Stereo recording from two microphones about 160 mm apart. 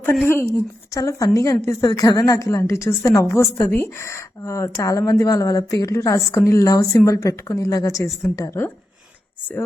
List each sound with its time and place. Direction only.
0.0 s a woman's voice: 15° left (ahead or behind)